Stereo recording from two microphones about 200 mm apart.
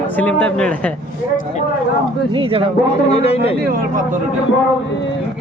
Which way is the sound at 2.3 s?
25° right (ahead or behind).